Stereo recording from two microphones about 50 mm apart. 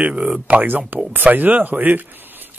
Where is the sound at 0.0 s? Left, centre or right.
Right.